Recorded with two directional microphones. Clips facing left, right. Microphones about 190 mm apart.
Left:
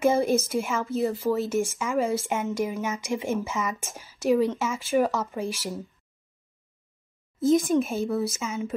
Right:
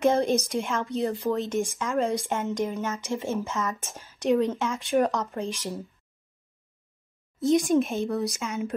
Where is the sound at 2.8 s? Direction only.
15° left (ahead or behind).